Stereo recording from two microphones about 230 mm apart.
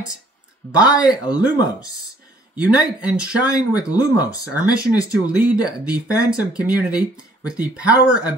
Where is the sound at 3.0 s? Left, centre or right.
Centre.